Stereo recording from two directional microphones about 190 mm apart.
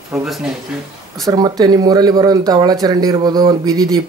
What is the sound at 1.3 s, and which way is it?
Speech, 20° right (ahead or behind).